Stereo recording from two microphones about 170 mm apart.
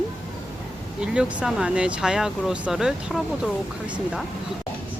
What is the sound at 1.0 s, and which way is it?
Speech, 5° right (ahead or behind).